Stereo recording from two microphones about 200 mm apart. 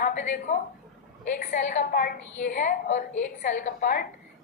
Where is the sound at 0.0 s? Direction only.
40° left (ahead or behind).